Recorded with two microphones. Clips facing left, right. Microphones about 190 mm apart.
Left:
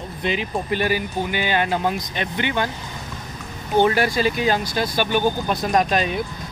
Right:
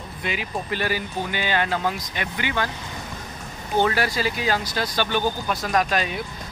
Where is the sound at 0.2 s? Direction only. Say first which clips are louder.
Left 5 dB; 25° left (ahead or behind).